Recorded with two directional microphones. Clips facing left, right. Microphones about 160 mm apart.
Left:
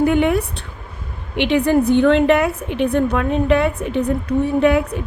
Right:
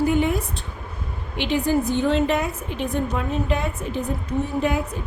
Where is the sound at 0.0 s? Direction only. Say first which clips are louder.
Left 5 dB; 65° left (ahead or behind).